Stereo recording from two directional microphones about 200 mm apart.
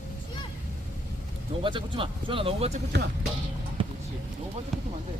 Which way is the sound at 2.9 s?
60° right (ahead or behind).